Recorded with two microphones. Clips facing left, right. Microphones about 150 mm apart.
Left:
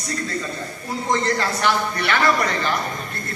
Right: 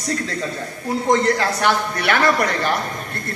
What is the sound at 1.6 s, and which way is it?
Speech, 50° right (ahead or behind).